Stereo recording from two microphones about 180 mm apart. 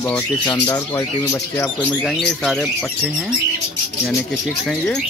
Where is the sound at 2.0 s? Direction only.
Centre (ahead or behind).